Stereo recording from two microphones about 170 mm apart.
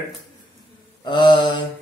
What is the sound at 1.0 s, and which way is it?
Speech, 25° left (ahead or behind).